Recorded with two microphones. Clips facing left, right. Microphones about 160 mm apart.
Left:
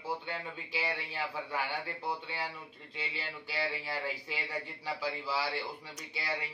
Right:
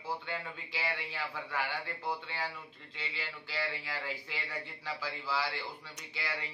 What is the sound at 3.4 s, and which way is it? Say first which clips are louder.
Speech: left 2 dB; 15° left (ahead or behind).